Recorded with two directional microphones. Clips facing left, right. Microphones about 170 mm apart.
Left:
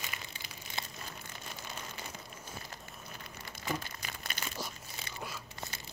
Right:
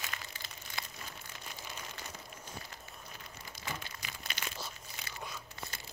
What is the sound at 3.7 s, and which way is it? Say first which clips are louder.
Crumpling: left 5 dB; 40° left (ahead or behind).